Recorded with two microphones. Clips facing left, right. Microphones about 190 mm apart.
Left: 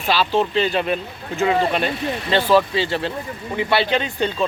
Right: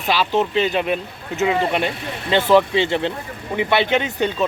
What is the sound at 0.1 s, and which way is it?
Speech, 15° right (ahead or behind).